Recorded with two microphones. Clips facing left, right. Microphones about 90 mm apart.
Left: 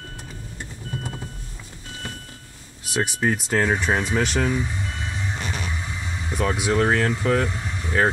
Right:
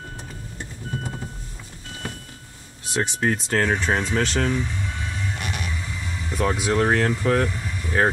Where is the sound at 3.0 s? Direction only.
5° left (ahead or behind).